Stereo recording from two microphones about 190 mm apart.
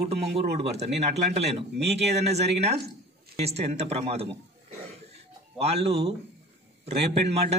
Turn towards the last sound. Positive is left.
turn(degrees=-30)  # may be behind; listen again after turning